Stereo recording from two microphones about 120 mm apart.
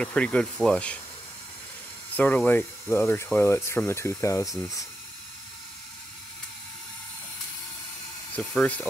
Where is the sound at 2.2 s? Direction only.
15° left (ahead or behind).